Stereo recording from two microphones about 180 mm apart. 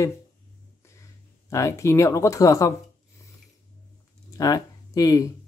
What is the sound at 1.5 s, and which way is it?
Speech, 15° left (ahead or behind).